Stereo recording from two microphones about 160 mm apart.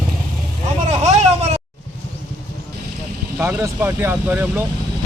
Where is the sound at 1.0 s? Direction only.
40° right (ahead or behind).